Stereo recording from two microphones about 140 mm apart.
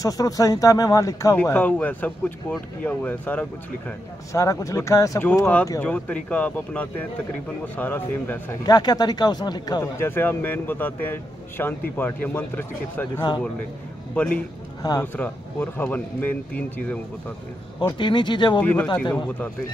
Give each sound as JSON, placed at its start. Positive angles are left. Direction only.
{"t": 0.0, "sound": "speech", "side_deg": 25}
{"t": 8.6, "sound": "speech", "side_deg": 30}
{"t": 14.8, "sound": "speech", "side_deg": 25}
{"t": 15.1, "sound": "speech", "side_deg": 15}
{"t": 17.7, "sound": "speech", "side_deg": 35}
{"t": 18.6, "sound": "speech", "side_deg": 10}